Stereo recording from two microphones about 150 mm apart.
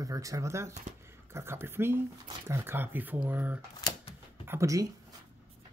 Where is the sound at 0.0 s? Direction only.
20° right (ahead or behind).